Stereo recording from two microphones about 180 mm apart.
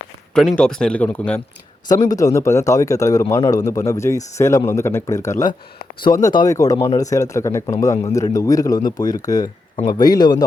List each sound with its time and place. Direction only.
0.3 s a man's voice: 5° left (ahead or behind); by 10.4 s 20° left (ahead or behind)